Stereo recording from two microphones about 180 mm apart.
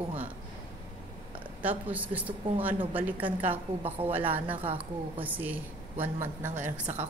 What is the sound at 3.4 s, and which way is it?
Speech, 30° right (ahead or behind).